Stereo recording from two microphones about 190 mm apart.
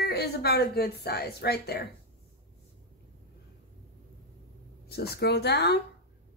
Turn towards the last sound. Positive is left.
turn(degrees=60)  # may be behind; listen again after turning